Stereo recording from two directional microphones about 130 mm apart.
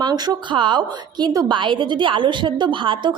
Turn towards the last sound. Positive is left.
turn(degrees=-40)  # may be behind; listen again after turning